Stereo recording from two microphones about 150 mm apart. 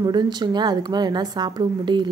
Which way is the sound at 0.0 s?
30° right (ahead or behind).